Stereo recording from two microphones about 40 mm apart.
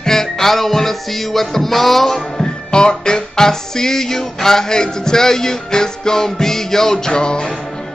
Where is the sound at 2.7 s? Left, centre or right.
Centre.